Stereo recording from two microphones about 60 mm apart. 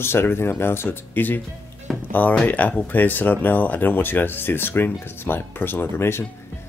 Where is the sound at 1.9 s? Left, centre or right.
Centre.